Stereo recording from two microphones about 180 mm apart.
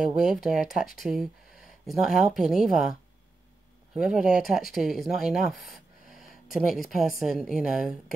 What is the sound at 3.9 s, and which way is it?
Speech, 5° right (ahead or behind).